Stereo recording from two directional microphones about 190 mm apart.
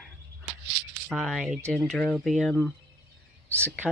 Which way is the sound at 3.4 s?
10° right (ahead or behind).